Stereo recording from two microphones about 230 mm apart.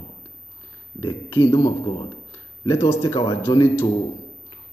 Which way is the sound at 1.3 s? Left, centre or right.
Centre.